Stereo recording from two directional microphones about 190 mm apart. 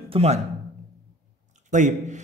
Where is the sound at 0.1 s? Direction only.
30° right (ahead or behind).